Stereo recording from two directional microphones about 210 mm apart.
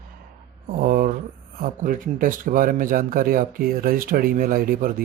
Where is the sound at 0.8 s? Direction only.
40° right (ahead or behind).